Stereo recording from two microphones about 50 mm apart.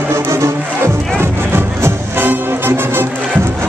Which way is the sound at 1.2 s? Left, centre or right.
Right.